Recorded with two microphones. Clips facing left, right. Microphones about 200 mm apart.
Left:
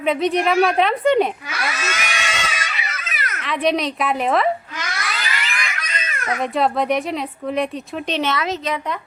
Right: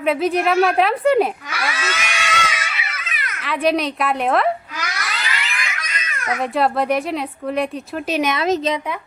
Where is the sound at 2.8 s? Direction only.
40° left (ahead or behind).